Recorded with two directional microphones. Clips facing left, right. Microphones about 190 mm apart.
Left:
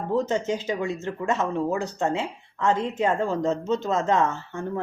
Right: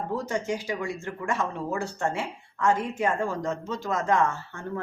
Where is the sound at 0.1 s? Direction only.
20° left (ahead or behind).